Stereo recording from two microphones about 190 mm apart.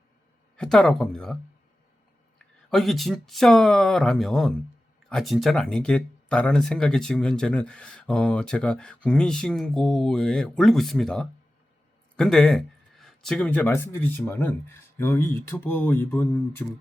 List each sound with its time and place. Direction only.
0.5 s speech: 5° left (ahead or behind)
2.6 s speech: centre (ahead or behind)